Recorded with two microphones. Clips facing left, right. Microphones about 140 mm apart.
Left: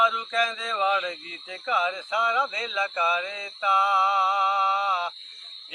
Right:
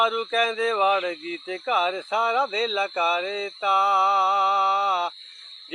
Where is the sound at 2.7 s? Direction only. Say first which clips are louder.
Right 3 dB; 30° right (ahead or behind).